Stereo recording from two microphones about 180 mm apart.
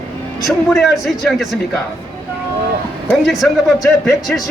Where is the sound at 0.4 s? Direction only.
Centre (ahead or behind).